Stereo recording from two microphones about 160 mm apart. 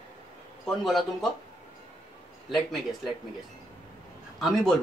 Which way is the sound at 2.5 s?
Centre (ahead or behind).